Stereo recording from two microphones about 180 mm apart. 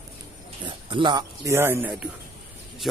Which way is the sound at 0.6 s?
25° right (ahead or behind).